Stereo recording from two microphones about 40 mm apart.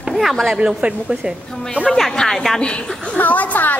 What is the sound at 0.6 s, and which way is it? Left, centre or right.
Speech, right.